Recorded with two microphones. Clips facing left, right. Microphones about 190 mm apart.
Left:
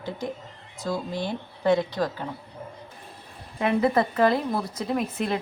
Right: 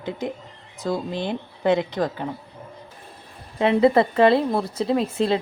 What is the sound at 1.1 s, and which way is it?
A woman's voice, 20° right (ahead or behind).